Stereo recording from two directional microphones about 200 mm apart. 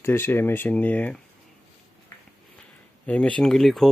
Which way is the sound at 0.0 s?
10° left (ahead or behind).